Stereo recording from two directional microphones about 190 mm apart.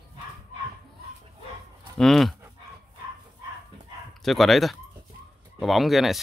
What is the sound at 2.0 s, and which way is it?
Speech, centre (ahead or behind).